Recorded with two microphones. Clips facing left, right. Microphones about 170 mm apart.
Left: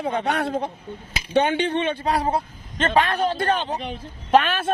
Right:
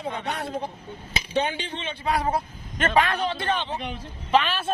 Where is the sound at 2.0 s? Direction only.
35° left (ahead or behind).